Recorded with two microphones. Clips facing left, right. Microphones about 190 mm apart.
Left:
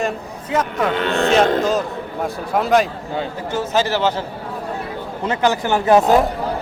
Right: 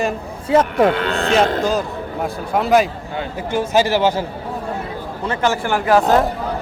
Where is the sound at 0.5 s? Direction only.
30° right (ahead or behind).